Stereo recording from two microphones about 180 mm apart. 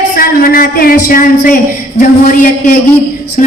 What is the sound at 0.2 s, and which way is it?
A man's voice, 50° left (ahead or behind).